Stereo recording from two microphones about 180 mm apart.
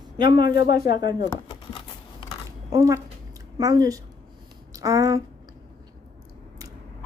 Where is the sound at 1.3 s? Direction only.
25° left (ahead or behind).